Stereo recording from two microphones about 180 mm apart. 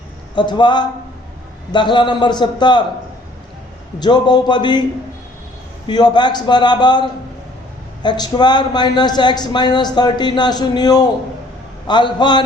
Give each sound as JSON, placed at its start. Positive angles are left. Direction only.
{"t": 0.3, "sound": "a man's voice", "side_deg": 25}
{"t": 4.0, "sound": "a man's voice", "side_deg": 25}
{"t": 5.9, "sound": "a man's voice", "side_deg": 25}
{"t": 8.0, "sound": "a man's voice", "side_deg": 25}